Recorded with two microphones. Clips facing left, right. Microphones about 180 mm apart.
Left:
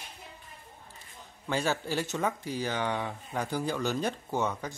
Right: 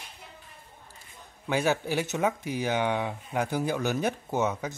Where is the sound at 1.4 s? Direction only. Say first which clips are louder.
Right 4 dB; 15° right (ahead or behind).